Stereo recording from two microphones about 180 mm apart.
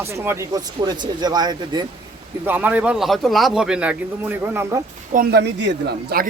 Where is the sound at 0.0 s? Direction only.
15° right (ahead or behind).